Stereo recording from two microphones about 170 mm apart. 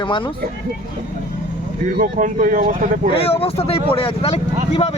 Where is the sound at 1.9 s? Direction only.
55° right (ahead or behind).